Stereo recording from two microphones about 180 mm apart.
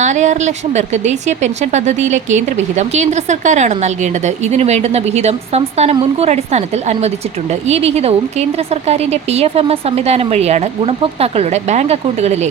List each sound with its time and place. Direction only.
0.0 s a woman's voice: 40° right (ahead or behind)